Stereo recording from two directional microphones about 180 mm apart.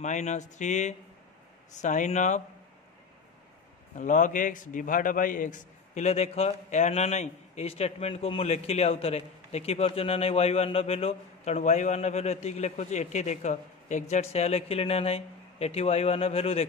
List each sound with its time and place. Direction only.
0.0 s a man's voice: 40° left (ahead or behind)
4.0 s a man's voice: 45° left (ahead or behind)